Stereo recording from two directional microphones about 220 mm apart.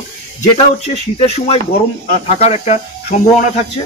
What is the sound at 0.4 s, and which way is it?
Speech, 30° left (ahead or behind).